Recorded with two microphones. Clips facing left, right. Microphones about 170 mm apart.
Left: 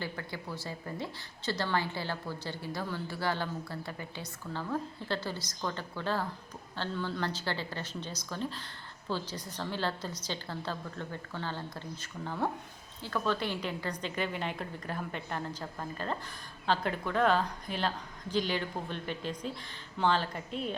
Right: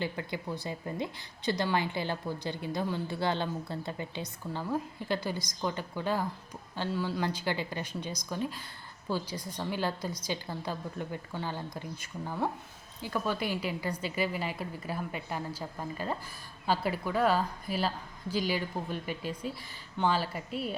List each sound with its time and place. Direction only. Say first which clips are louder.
0.0 s a woman's voice: right 4 dB; 20° right (ahead or behind)